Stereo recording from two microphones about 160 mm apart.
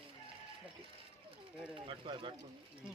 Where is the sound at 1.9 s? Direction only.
30° right (ahead or behind).